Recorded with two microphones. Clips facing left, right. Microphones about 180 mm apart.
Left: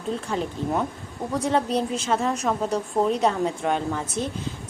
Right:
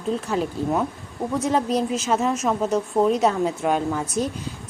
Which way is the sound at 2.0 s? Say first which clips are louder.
Right 2 dB; 5° right (ahead or behind).